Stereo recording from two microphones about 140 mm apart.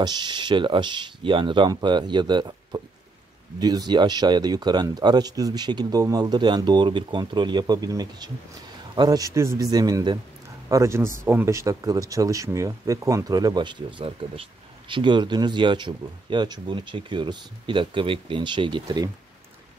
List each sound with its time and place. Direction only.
0.0 s speech: 30° right (ahead or behind)